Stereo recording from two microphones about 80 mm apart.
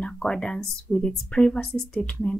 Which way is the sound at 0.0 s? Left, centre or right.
Centre.